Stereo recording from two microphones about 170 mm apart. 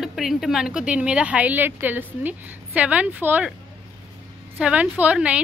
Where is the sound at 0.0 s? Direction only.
Centre (ahead or behind).